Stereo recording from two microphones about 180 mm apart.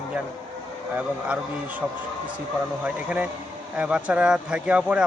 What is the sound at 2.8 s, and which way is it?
A man's voice, 10° right (ahead or behind).